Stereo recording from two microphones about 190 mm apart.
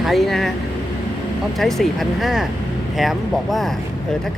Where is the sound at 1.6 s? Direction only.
Centre (ahead or behind).